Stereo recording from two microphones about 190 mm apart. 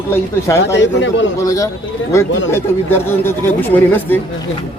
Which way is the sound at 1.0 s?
75° left (ahead or behind).